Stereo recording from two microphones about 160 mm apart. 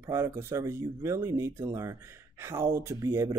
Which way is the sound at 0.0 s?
15° right (ahead or behind).